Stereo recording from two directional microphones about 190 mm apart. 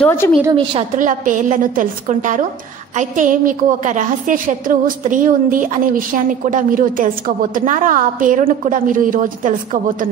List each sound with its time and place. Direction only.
0.0 s a woman's voice: 10° left (ahead or behind)
0.9 s a woman's voice: 45° right (ahead or behind)